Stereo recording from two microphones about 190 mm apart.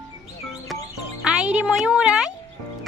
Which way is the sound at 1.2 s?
5° right (ahead or behind).